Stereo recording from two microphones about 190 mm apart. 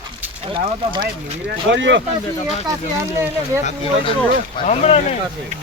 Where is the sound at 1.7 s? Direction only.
75° right (ahead or behind).